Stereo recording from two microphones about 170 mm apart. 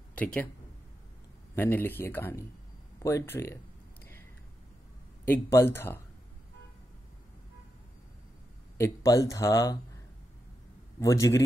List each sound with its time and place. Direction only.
0.1 s speech: 5° left (ahead or behind)
1.5 s a man's voice: 15° left (ahead or behind)
5.2 s a man's voice: 15° left (ahead or behind)
8.7 s speech: 20° left (ahead or behind)
11.0 s speech: 20° left (ahead or behind)